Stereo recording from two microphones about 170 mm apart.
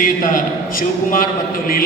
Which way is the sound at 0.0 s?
50° left (ahead or behind).